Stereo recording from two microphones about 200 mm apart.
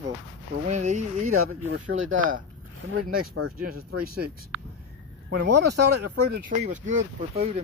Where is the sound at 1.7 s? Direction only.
65° right (ahead or behind).